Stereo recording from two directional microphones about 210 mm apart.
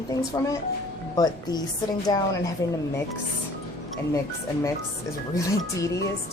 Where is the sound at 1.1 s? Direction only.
20° left (ahead or behind).